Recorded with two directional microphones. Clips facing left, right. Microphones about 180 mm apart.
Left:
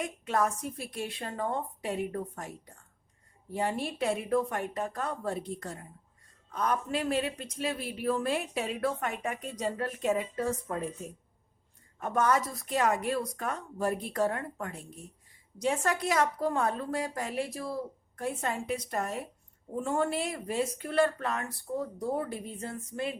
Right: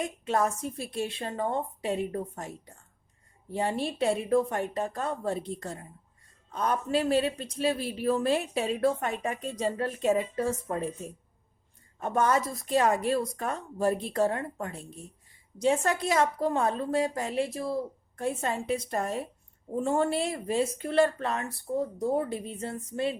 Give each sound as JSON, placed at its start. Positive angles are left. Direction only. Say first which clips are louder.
{"t": 0.0, "sound": "speech", "louder": "right 2 dB", "side_deg": -25}
{"t": 3.5, "sound": "speech", "louder": "right 2 dB", "side_deg": -25}
{"t": 11.9, "sound": "speech", "louder": "right 2 dB", "side_deg": -25}